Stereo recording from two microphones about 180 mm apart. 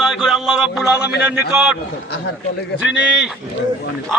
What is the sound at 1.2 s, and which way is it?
Speech, centre (ahead or behind).